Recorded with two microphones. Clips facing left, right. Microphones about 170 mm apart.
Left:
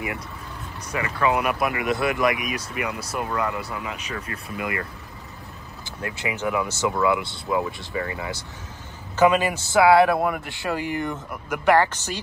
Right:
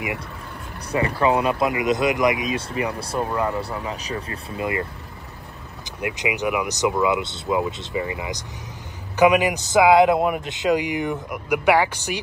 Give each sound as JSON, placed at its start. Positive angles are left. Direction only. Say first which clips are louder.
{"t": 0.9, "sound": "speech", "louder": "right 3 dB", "side_deg": -30}
{"t": 5.9, "sound": "a man's voice", "louder": "right 4 dB", "side_deg": -15}